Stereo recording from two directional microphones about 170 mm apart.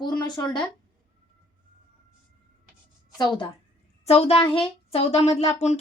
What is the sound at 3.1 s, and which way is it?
Speech, 25° left (ahead or behind).